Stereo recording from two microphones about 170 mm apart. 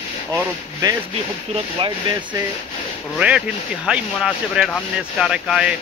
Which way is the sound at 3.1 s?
5° right (ahead or behind).